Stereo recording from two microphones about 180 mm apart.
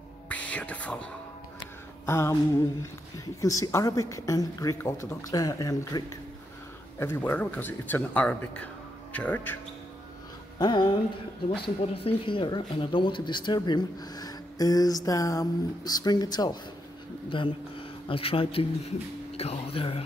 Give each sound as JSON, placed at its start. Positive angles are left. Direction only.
{"t": 0.3, "sound": "whispering", "side_deg": 5}
{"t": 2.0, "sound": "speech", "side_deg": 15}
{"t": 10.6, "sound": "speech", "side_deg": 25}
{"t": 11.9, "sound": "speech", "side_deg": 30}